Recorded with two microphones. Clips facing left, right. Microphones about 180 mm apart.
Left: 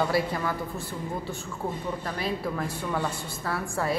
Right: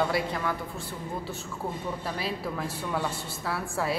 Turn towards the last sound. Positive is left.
turn(degrees=-5)  # may be behind; listen again after turning